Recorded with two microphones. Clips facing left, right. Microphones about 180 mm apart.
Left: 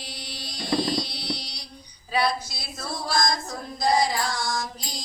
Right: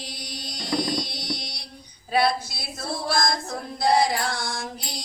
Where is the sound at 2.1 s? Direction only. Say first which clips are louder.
Right 3 dB; 55° right (ahead or behind).